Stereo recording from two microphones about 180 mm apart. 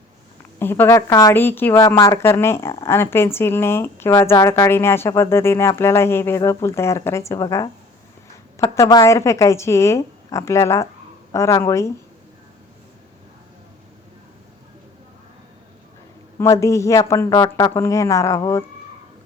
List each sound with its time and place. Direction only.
0.6 s a woman's voice: 10° left (ahead or behind)
16.4 s a woman's voice: 15° left (ahead or behind)